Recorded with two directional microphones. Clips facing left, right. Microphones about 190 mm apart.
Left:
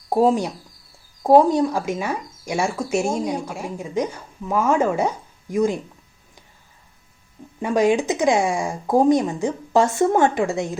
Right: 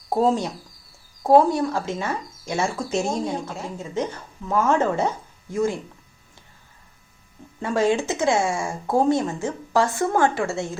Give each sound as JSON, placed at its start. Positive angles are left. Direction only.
{"t": 0.1, "sound": "speech", "side_deg": 10}
{"t": 7.6, "sound": "speech", "side_deg": 15}